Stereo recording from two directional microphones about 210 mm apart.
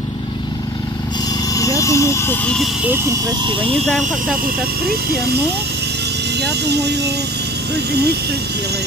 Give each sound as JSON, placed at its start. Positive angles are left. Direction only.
{"t": 1.5, "sound": "speech", "side_deg": 15}
{"t": 3.8, "sound": "speech", "side_deg": 0}
{"t": 4.8, "sound": "speech", "side_deg": -50}
{"t": 6.4, "sound": "speech", "side_deg": -55}